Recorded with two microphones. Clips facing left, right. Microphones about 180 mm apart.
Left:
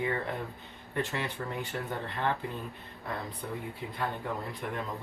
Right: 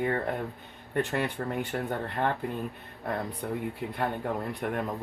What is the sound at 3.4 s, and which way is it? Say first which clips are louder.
Speech: right 5 dB; 55° right (ahead or behind).